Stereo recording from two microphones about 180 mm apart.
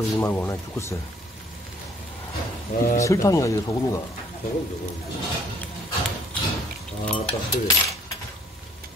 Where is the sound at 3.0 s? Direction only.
20° left (ahead or behind).